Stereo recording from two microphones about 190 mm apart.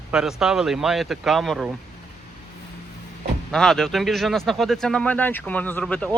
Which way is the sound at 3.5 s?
Centre (ahead or behind).